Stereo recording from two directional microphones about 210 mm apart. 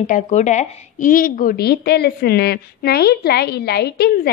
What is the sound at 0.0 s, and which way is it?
A woman's voice, 35° left (ahead or behind).